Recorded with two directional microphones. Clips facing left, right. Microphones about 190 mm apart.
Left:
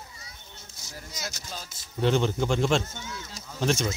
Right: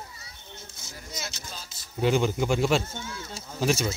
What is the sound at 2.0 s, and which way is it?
Speech, 10° right (ahead or behind).